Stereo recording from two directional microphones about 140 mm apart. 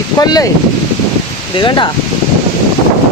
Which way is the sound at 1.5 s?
35° left (ahead or behind).